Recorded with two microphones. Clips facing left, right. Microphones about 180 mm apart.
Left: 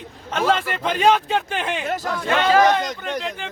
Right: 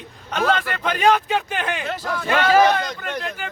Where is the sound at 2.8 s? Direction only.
20° left (ahead or behind).